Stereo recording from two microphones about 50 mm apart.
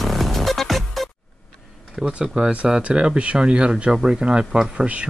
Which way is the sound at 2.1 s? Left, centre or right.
Right.